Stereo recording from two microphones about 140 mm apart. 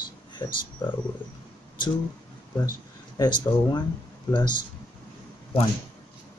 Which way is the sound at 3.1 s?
30° left (ahead or behind).